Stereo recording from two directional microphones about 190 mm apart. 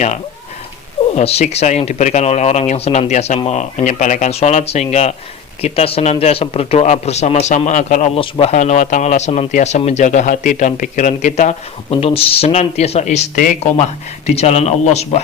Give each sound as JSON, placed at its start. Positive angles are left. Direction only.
{"t": 1.1, "sound": "speech", "side_deg": 35}